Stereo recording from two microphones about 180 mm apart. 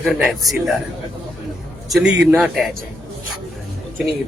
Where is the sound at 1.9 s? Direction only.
5° right (ahead or behind).